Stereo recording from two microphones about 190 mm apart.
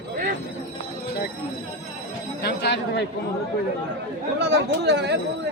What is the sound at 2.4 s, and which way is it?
Speech, 60° left (ahead or behind).